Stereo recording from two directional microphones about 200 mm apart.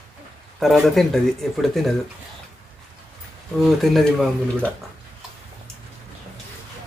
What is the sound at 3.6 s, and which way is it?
A man's voice, centre (ahead or behind).